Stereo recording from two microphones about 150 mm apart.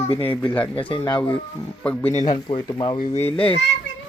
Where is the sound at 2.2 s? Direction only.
30° left (ahead or behind).